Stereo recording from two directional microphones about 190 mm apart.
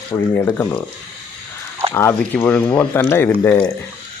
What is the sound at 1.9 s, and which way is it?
Speech, 10° left (ahead or behind).